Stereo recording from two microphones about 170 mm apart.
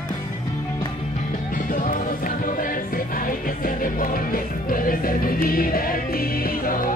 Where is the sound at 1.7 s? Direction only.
50° left (ahead or behind).